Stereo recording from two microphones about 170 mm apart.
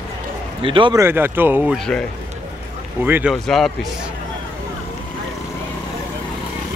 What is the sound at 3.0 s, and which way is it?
Speech, 10° right (ahead or behind).